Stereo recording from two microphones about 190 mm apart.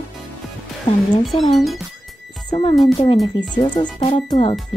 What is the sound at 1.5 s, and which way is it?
Speech, centre (ahead or behind).